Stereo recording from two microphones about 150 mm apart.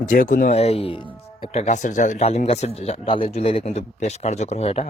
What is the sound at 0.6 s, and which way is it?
Speech, 40° left (ahead or behind).